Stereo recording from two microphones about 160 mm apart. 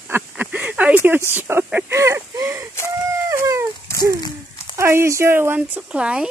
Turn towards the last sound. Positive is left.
turn(degrees=-5)  # may be behind; listen again after turning